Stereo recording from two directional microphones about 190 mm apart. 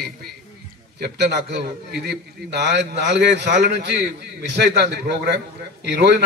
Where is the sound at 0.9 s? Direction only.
60° right (ahead or behind).